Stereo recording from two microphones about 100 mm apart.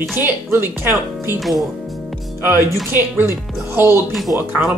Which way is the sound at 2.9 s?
25° right (ahead or behind).